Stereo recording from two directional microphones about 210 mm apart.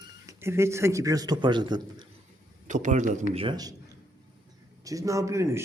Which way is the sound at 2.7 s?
35° right (ahead or behind).